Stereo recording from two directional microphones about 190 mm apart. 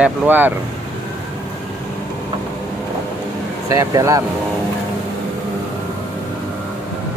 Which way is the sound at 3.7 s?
15° right (ahead or behind).